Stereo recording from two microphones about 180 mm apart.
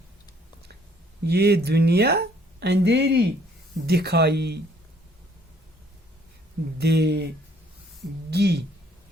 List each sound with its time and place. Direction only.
1.2 s speech: 65° right (ahead or behind)
6.7 s speech: 65° right (ahead or behind)
8.3 s speech: 65° right (ahead or behind)